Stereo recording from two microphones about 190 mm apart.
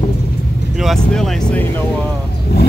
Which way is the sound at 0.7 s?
Centre (ahead or behind).